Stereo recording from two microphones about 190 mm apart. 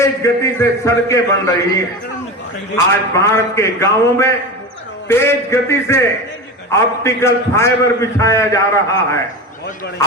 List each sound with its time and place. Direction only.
0.0 s a man's voice: 15° left (ahead or behind)